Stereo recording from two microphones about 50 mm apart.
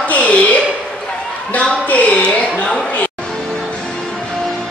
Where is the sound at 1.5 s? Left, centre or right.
Left.